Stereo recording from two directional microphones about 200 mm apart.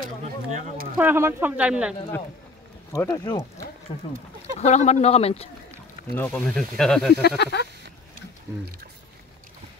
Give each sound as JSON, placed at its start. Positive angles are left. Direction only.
{"t": 0.2, "sound": "a sound", "side_deg": -40}
{"t": 0.9, "sound": "speech", "side_deg": -10}
{"t": 2.9, "sound": "speech", "side_deg": 15}
{"t": 4.6, "sound": "speech", "side_deg": 35}
{"t": 6.1, "sound": "speech", "side_deg": 5}
{"t": 7.2, "sound": "speech", "side_deg": 55}